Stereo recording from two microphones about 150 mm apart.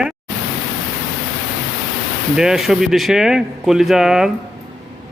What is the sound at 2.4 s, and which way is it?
Speech, 5° right (ahead or behind).